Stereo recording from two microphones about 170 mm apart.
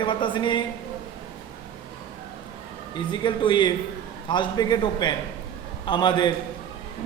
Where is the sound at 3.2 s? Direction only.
30° left (ahead or behind).